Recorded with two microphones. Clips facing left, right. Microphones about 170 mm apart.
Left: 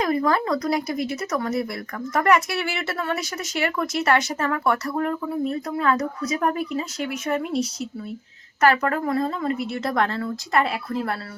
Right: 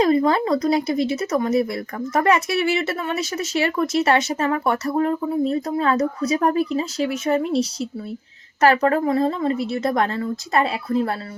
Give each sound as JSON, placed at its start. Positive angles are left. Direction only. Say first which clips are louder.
{"t": 0.0, "sound": "speech", "louder": "right 4 dB", "side_deg": -25}